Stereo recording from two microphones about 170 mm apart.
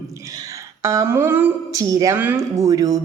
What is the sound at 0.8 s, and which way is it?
Speech, 15° right (ahead or behind).